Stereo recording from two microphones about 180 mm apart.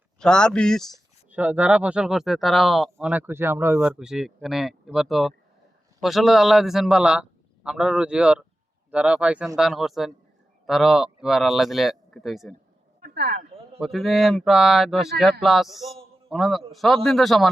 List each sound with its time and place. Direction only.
0.2 s speech: 5° left (ahead or behind)
1.3 s speech: 10° right (ahead or behind)
13.0 s a sound: 60° right (ahead or behind)
13.7 s speech: centre (ahead or behind)